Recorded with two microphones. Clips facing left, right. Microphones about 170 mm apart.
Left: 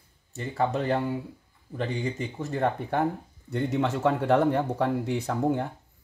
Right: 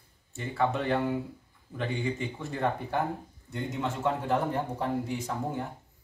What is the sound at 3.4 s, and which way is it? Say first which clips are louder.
A man's voice: left 6 dB; 75° left (ahead or behind).